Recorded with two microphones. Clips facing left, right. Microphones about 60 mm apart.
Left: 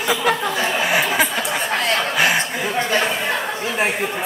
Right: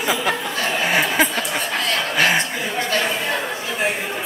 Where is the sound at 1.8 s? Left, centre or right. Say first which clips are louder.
Left 3 dB; left.